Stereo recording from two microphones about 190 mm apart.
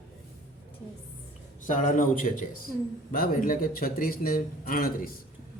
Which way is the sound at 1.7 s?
40° left (ahead or behind).